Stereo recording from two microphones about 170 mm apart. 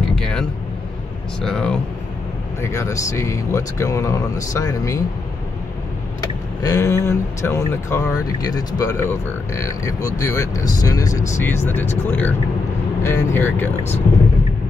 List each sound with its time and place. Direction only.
0.2 s vehicle: 5° left (ahead or behind)
1.4 s speech: 5° left (ahead or behind)
2.6 s speech: 15° left (ahead or behind)
6.6 s speech: 20° left (ahead or behind)